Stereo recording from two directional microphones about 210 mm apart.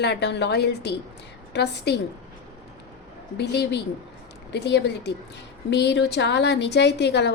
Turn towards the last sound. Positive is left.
turn(degrees=55)  # may be behind; listen again after turning